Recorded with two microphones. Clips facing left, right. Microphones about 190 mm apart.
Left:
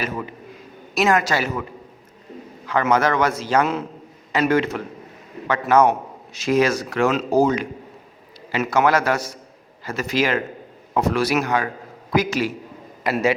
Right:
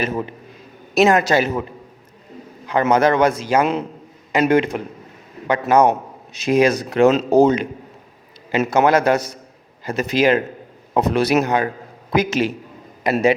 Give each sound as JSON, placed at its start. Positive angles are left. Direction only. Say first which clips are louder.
{"t": 0.9, "sound": "a man's voice", "louder": "right 5 dB", "side_deg": -20}
{"t": 2.6, "sound": "a man's voice", "louder": "right 3 dB", "side_deg": -20}